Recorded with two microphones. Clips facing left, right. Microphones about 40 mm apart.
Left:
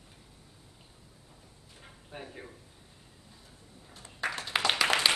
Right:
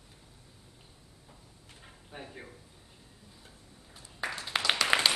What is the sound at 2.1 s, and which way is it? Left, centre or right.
Speech, centre.